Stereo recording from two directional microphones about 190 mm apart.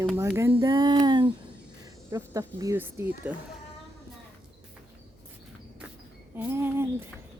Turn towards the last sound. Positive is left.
turn(degrees=-10)  # may be behind; listen again after turning